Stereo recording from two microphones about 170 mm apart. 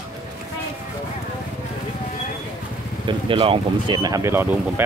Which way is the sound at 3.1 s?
30° right (ahead or behind).